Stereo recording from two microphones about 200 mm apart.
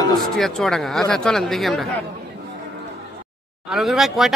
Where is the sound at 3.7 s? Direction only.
Centre (ahead or behind).